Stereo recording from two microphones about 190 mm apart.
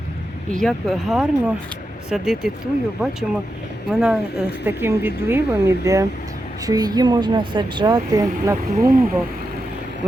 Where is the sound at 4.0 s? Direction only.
5° right (ahead or behind); by 8.6 s 20° right (ahead or behind).